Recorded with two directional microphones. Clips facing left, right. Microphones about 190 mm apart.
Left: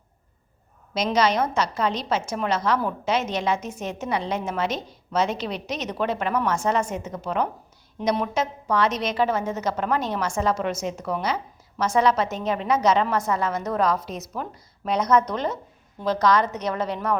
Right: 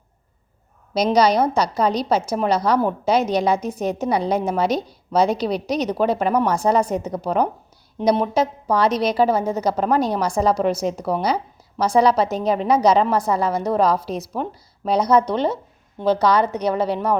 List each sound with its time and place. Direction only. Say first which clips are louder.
0.9 s a woman's voice: right 5 dB; 35° right (ahead or behind)